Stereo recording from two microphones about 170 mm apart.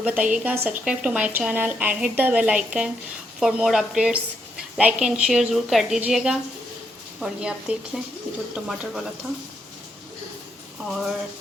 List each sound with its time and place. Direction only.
0.0 s a woman's voice: 10° right (ahead or behind)
10.8 s a woman's voice: centre (ahead or behind)